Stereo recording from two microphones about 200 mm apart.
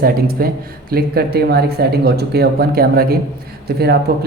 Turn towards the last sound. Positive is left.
turn(degrees=-55)  # may be behind; listen again after turning